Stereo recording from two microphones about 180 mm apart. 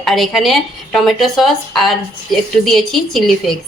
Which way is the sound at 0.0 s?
Centre (ahead or behind).